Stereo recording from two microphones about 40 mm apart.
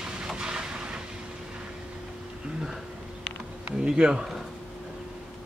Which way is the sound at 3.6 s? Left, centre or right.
Right.